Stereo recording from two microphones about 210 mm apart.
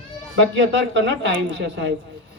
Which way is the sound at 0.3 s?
60° right (ahead or behind).